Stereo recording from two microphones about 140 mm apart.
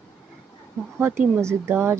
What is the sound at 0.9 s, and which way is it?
Speech, 15° right (ahead or behind).